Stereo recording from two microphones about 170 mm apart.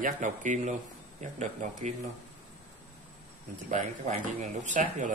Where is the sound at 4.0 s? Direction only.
45° right (ahead or behind).